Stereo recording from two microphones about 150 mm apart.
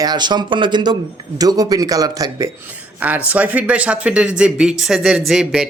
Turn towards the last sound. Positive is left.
turn(degrees=-5)  # may be behind; listen again after turning